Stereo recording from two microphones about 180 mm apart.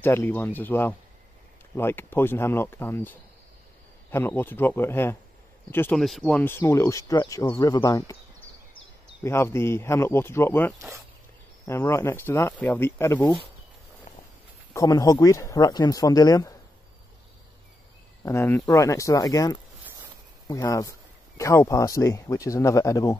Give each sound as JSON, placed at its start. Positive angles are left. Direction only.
{"t": 0.0, "sound": "speech", "side_deg": 10}
{"t": 5.9, "sound": "speech", "side_deg": 0}
{"t": 14.7, "sound": "speech", "side_deg": 20}
{"t": 18.2, "sound": "speech", "side_deg": 15}